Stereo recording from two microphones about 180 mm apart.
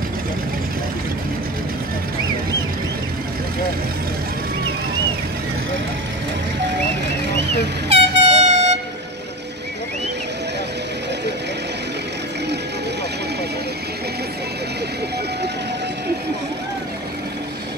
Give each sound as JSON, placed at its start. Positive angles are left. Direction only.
{"t": 7.9, "sound": "air horn", "side_deg": -35}